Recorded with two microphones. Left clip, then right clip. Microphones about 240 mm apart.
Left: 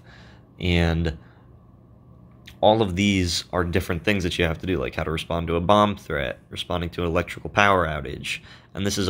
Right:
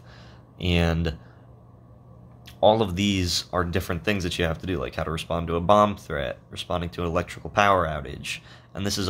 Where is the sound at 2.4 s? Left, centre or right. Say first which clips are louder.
Left 1 dB; centre.